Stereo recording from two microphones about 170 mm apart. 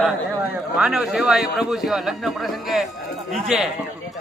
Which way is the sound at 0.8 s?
5° right (ahead or behind).